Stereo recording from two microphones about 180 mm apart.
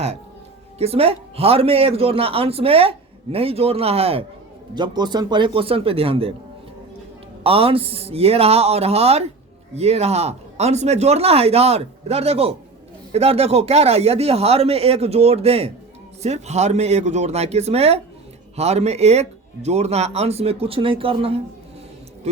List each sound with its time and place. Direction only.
0.8 s speech: 35° right (ahead or behind)
7.4 s speech: 30° right (ahead or behind)